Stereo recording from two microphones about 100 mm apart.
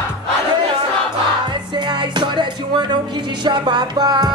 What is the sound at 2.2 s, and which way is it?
Music, 50° right (ahead or behind).